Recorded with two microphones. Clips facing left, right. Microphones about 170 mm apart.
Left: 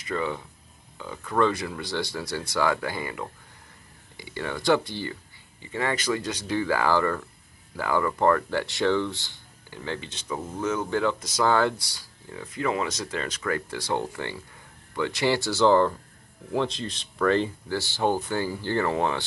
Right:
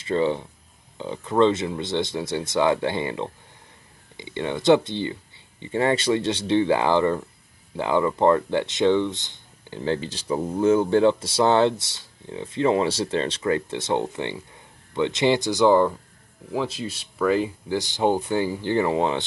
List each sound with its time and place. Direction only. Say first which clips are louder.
0.0 s speech: right 7 dB; 30° right (ahead or behind)